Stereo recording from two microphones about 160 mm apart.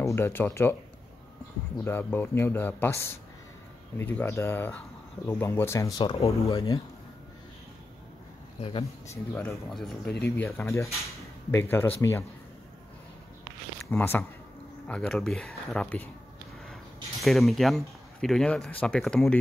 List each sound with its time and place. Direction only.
0.0 s speech: 15° left (ahead or behind)
1.9 s speech: 15° left (ahead or behind)
5.9 s speech: 30° left (ahead or behind)
8.5 s speech: 30° left (ahead or behind)
9.0 s speech: 15° left (ahead or behind)
13.8 s speech: 15° left (ahead or behind)
17.2 s speech: centre (ahead or behind)